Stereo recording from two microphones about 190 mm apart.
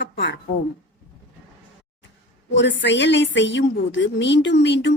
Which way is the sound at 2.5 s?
70° left (ahead or behind).